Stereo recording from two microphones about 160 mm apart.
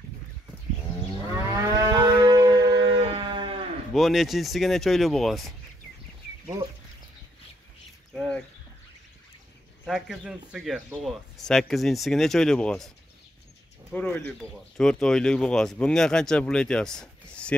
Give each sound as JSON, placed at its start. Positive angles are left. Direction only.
{"t": 1.3, "sound": "livestock", "side_deg": -20}
{"t": 3.9, "sound": "speech", "side_deg": 0}
{"t": 8.1, "sound": "a sound", "side_deg": 0}
{"t": 9.8, "sound": "speech", "side_deg": 0}
{"t": 13.9, "sound": "speech", "side_deg": 10}